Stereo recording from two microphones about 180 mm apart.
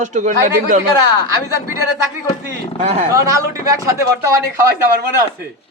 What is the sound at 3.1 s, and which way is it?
A man's voice, 20° right (ahead or behind).